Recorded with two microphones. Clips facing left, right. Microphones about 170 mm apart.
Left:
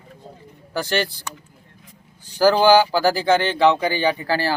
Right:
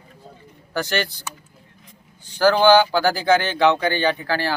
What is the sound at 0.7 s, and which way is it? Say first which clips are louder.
Speech: left 1 dB; centre (ahead or behind).